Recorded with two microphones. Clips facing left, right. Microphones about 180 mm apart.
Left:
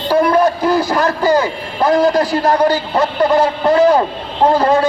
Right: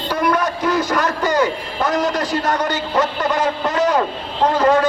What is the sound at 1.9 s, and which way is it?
A man's voice, 30° left (ahead or behind).